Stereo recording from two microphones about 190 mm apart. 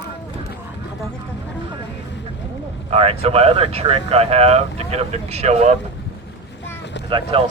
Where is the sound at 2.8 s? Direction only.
30° right (ahead or behind).